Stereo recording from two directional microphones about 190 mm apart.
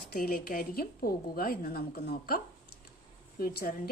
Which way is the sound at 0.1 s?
50° left (ahead or behind).